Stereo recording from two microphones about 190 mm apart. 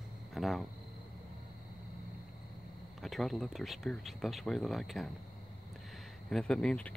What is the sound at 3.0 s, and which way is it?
Speech, centre (ahead or behind).